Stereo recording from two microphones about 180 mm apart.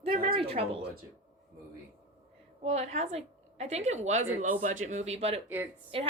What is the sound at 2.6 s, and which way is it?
A woman's voice, 40° right (ahead or behind).